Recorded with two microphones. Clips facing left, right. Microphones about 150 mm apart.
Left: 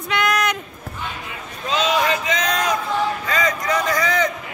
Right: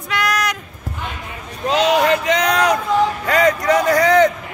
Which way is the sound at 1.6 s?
70° right (ahead or behind).